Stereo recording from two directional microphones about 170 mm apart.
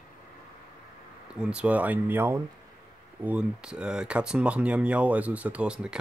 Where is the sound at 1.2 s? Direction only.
5° right (ahead or behind).